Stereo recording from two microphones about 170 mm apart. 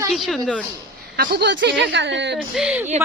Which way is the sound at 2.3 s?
5° right (ahead or behind).